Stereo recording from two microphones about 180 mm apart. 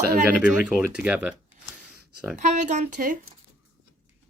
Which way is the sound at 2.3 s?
40° right (ahead or behind).